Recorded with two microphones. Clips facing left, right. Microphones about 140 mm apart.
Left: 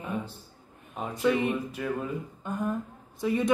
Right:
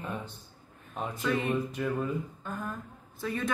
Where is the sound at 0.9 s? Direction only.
5° left (ahead or behind).